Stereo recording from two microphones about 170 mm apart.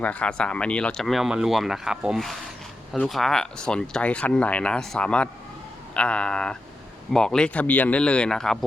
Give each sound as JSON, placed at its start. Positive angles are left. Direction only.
{"t": 0.0, "sound": "speech", "side_deg": 10}